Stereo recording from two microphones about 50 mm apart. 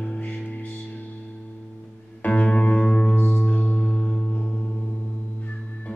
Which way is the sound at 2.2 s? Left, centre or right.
Left.